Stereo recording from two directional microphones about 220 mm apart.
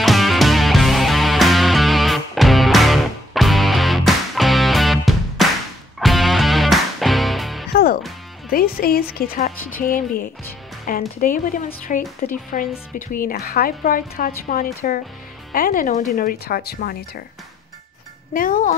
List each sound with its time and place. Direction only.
0.0 s music: centre (ahead or behind)
7.7 s music: 45° left (ahead or behind)
8.5 s speech: 40° left (ahead or behind)
18.3 s speech: 40° left (ahead or behind)